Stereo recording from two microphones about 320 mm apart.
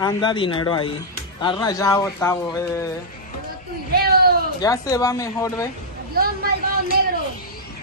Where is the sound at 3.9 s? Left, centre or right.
Right.